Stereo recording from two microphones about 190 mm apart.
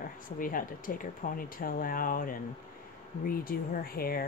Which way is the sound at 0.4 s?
45° left (ahead or behind).